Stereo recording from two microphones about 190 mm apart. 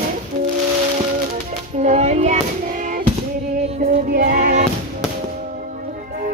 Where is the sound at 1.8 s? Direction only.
35° right (ahead or behind).